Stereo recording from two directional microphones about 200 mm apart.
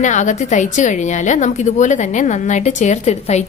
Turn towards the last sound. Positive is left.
turn(degrees=35)  # may be behind; listen again after turning